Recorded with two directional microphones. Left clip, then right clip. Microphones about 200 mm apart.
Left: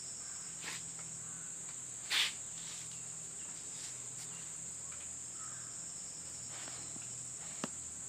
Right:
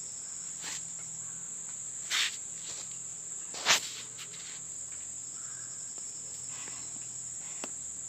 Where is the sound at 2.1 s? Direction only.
55° right (ahead or behind).